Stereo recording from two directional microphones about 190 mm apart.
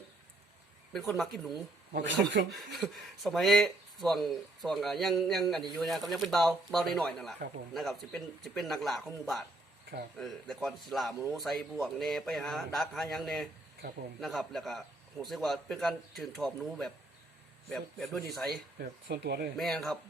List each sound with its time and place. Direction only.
0.9 s speech: centre (ahead or behind)
1.9 s speech: 65° right (ahead or behind)
2.5 s speech: centre (ahead or behind)
18.8 s speech: 55° right (ahead or behind)
19.5 s speech: centre (ahead or behind)